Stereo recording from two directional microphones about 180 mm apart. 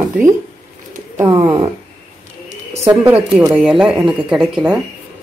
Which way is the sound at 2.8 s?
15° right (ahead or behind).